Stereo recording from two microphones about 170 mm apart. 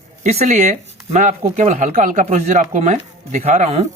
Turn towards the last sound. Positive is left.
turn(degrees=-40)  # may be behind; listen again after turning